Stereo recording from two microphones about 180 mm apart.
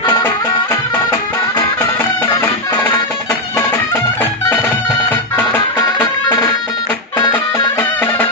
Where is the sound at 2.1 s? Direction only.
20° left (ahead or behind).